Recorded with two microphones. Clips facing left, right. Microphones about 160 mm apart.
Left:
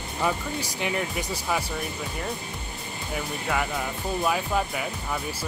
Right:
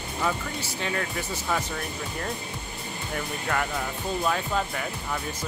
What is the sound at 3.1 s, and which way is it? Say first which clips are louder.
Speech: left 1 dB; 5° left (ahead or behind).